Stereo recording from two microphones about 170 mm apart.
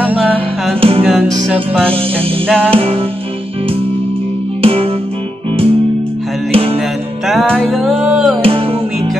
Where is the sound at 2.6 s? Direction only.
35° right (ahead or behind).